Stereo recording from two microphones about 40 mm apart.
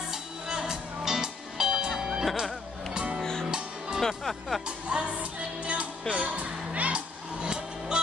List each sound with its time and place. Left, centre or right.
0.5 s music: centre
2.9 s music: right
3.2 s music: centre
3.4 s music: centre
4.1 s speech: centre
4.6 s music: right
7.4 s music: right